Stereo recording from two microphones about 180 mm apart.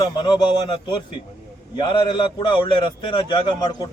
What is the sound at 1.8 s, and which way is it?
A man's voice, 25° left (ahead or behind).